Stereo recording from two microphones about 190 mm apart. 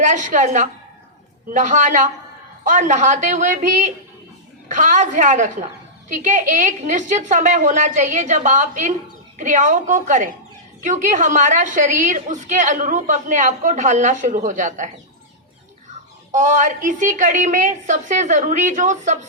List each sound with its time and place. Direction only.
0.0 s a woman's voice: 40° right (ahead or behind)
16.3 s a woman's voice: 40° right (ahead or behind)